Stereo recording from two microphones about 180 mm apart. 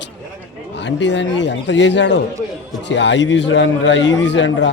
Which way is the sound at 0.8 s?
80° left.